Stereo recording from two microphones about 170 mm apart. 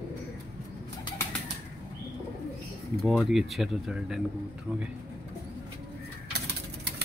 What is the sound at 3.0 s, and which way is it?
Speech, centre (ahead or behind).